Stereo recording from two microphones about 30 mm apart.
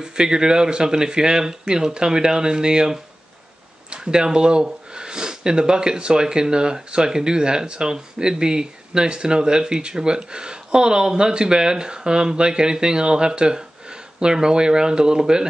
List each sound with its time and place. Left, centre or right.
0.0 s speech: right